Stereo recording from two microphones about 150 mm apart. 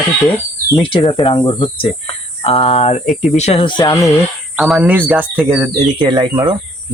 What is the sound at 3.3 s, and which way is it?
Speech, 40° left (ahead or behind).